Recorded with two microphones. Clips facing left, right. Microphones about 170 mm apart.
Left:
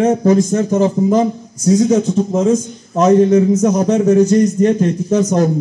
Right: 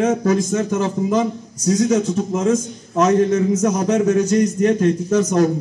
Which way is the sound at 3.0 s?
35° left (ahead or behind).